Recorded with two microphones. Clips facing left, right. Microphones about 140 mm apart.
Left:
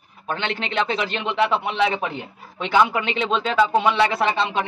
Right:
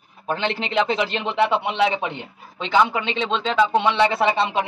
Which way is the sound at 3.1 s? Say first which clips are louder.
Left 1 dB; 10° left (ahead or behind).